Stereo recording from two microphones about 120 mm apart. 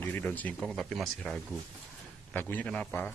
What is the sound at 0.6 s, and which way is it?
Speech, centre (ahead or behind).